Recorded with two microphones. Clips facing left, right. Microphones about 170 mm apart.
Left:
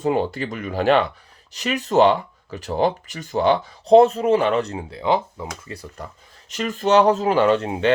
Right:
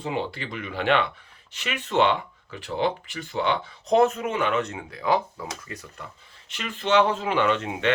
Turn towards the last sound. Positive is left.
turn(degrees=35)  # may be behind; listen again after turning